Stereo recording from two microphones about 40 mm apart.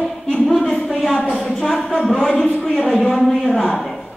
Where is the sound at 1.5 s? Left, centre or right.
Centre.